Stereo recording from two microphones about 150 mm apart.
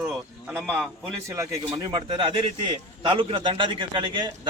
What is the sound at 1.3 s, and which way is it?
A man's voice, 20° right (ahead or behind).